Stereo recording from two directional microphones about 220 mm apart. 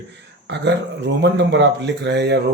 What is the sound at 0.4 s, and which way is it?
Speech, 55° right (ahead or behind).